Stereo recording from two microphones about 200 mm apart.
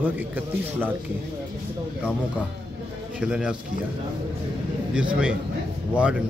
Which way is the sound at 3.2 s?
5° right (ahead or behind).